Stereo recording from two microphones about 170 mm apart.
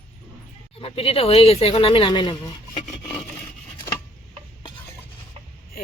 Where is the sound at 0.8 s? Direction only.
35° left (ahead or behind).